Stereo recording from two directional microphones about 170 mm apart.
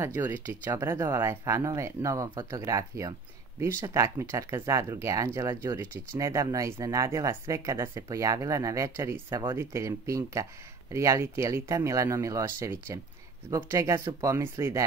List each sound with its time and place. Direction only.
0.0 s speech: 15° right (ahead or behind)